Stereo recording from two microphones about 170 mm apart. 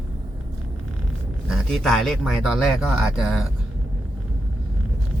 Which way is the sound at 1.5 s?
Centre (ahead or behind).